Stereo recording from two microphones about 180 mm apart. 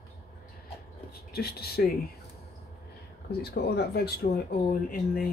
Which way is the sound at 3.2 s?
65° left (ahead or behind).